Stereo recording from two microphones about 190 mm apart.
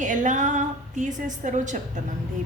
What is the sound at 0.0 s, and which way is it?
Female singing, 40° right (ahead or behind).